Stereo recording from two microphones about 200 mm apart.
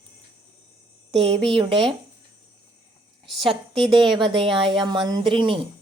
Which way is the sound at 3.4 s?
25° right (ahead or behind).